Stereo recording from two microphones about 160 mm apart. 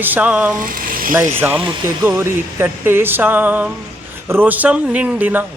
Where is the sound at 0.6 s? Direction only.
65° right (ahead or behind).